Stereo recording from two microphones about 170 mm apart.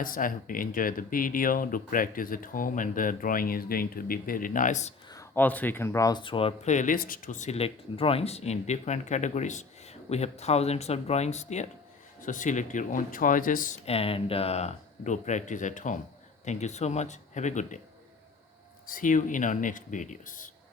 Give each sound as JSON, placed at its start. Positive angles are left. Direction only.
{"t": 0.0, "sound": "speech", "side_deg": 55}
{"t": 5.0, "sound": "speech", "side_deg": 20}
{"t": 6.7, "sound": "speech", "side_deg": 50}
{"t": 18.9, "sound": "speech", "side_deg": 50}